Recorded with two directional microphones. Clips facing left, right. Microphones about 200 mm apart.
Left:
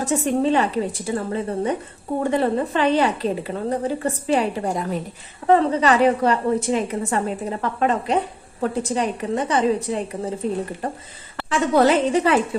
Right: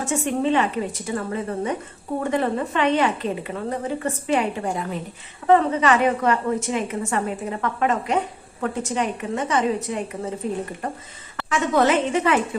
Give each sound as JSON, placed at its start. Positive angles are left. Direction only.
{"t": 0.0, "sound": "a woman's voice", "side_deg": 35}
{"t": 11.4, "sound": "a woman's voice", "side_deg": 35}